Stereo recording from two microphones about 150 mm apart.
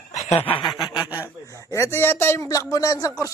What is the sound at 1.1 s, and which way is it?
Speech, 20° left (ahead or behind).